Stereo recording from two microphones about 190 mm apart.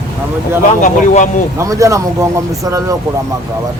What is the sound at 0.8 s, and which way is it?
Speech, 40° left (ahead or behind).